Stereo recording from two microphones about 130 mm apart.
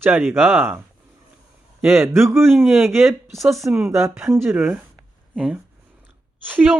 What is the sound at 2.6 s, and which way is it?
Speech, centre (ahead or behind).